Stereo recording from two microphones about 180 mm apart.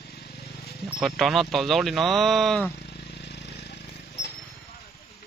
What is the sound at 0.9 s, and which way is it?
Speech, centre (ahead or behind).